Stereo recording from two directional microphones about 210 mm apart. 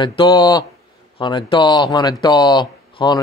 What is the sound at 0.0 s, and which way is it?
Speech, 20° left (ahead or behind).